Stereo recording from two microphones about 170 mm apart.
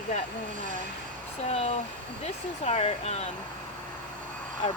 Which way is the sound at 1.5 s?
40° left (ahead or behind).